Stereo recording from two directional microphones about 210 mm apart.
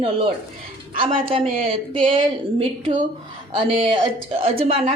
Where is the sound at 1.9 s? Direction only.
25° right (ahead or behind).